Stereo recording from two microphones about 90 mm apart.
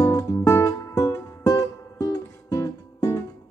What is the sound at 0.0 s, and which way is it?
Music, 45° left (ahead or behind).